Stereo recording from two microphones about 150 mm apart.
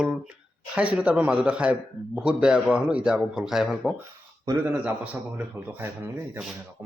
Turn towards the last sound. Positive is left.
turn(degrees=-10)  # may be behind; listen again after turning